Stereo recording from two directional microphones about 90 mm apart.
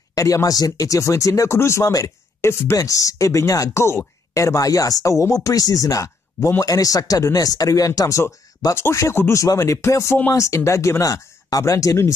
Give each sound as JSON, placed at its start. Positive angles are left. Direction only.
{"t": 0.1, "sound": "speech", "side_deg": 40}